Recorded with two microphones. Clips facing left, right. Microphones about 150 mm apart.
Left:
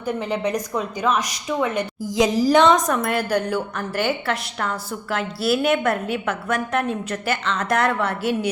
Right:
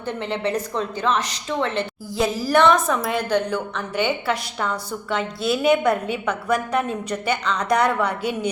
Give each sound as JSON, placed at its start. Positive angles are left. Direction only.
{"t": 0.0, "sound": "a woman's voice", "side_deg": 10}